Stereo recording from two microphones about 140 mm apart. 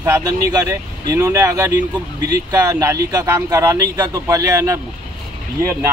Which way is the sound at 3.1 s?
25° right (ahead or behind).